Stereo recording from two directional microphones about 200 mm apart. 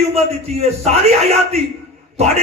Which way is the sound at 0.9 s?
30° right (ahead or behind).